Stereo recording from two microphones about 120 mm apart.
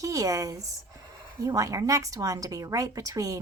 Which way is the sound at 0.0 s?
30° right (ahead or behind).